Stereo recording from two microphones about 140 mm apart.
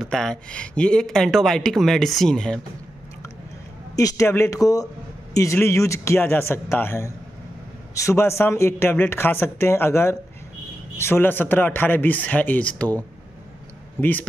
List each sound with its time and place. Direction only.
0.0 s speech: 5° left (ahead or behind)
3.9 s speech: 25° left (ahead or behind)